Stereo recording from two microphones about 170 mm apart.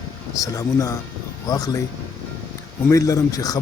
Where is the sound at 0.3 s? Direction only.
20° left (ahead or behind).